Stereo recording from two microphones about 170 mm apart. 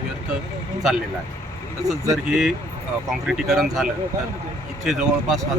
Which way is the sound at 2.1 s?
Centre (ahead or behind).